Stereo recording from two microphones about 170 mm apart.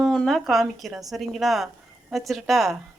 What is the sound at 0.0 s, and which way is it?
Speech, centre (ahead or behind).